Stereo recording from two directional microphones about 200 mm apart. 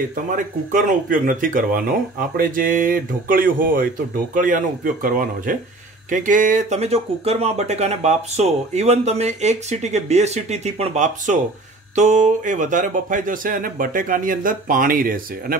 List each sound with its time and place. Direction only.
0.7 s speech: 40° right (ahead or behind)